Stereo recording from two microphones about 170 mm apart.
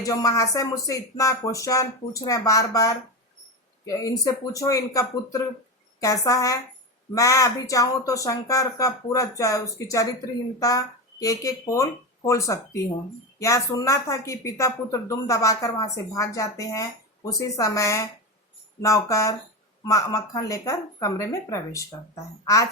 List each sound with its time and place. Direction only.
0.0 s a woman's voice: 20° left (ahead or behind)